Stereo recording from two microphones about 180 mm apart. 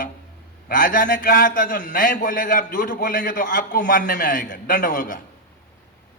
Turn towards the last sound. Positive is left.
turn(degrees=45)  # may be behind; listen again after turning